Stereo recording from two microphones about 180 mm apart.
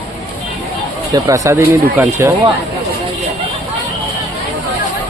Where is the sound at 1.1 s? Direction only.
20° right (ahead or behind).